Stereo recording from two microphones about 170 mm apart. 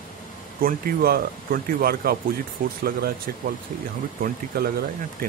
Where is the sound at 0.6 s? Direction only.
60° right (ahead or behind).